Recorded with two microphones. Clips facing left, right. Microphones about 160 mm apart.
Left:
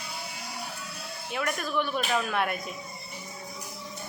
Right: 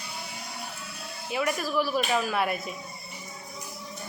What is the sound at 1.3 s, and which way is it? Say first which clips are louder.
A woman's voice: right 3 dB; 5° right (ahead or behind).